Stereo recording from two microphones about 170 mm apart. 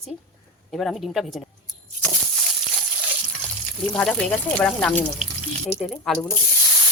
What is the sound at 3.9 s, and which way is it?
Speech, 5° left (ahead or behind).